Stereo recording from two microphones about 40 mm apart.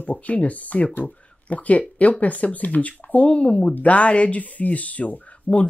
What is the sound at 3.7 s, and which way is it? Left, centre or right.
Speech, left.